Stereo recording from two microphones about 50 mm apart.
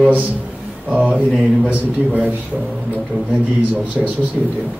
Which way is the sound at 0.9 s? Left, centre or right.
Right.